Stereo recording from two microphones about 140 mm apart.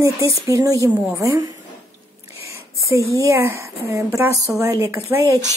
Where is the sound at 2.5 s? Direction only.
20° right (ahead or behind).